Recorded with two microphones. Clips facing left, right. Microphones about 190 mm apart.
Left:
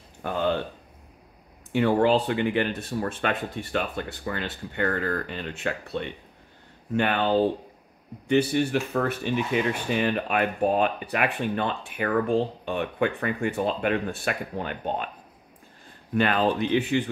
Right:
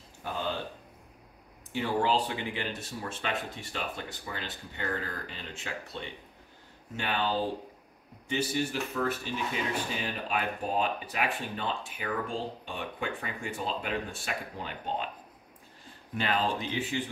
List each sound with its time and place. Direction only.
0.2 s speech: 60° left (ahead or behind)
1.7 s speech: 60° left (ahead or behind)
16.2 s speech: 60° left (ahead or behind)